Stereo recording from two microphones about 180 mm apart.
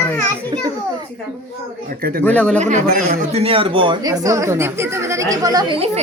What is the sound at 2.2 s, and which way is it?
Speech, 5° left (ahead or behind).